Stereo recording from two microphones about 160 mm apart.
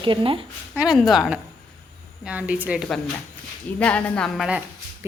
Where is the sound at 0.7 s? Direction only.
Centre (ahead or behind).